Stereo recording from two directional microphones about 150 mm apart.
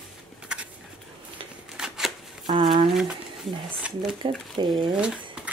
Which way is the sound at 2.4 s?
30° right (ahead or behind).